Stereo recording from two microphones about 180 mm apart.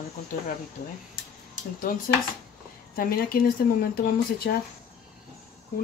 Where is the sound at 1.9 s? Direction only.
50° left (ahead or behind).